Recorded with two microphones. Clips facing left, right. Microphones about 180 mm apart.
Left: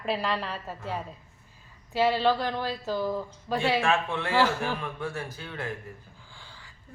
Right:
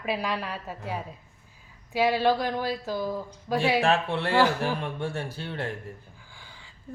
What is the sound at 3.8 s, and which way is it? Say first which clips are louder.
Speech: right 2 dB; 35° right (ahead or behind).